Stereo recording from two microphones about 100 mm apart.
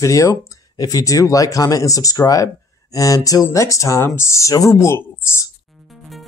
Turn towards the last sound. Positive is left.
turn(degrees=0)  # may be behind; listen again after turning